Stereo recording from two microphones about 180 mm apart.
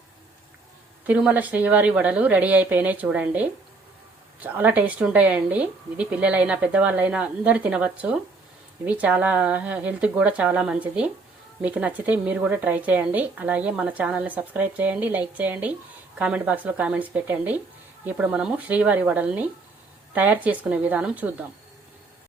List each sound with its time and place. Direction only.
1.0 s a woman's voice: 10° right (ahead or behind)